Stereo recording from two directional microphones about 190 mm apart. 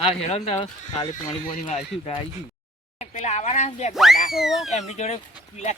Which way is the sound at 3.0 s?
35° left (ahead or behind).